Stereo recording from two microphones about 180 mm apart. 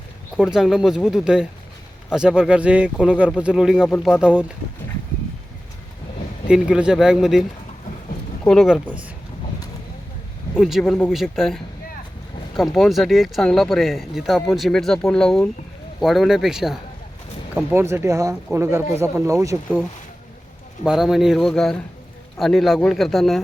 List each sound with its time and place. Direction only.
0.3 s speech: 5° right (ahead or behind)
6.5 s speech: 5° right (ahead or behind)
8.4 s speech: centre (ahead or behind)
10.5 s speech: centre (ahead or behind); by 19.8 s 15° right (ahead or behind)
20.8 s speech: centre (ahead or behind)